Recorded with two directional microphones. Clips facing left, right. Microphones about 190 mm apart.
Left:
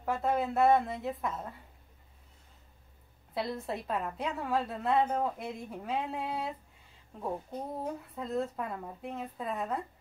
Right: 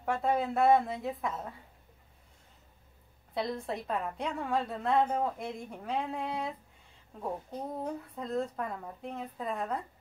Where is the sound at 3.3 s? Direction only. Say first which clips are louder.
Right 1 dB; centre (ahead or behind).